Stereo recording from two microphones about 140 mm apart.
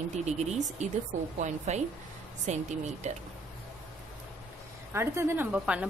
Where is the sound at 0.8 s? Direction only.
55° right (ahead or behind).